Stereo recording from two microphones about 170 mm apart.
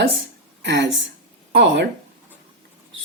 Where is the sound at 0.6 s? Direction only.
90° right.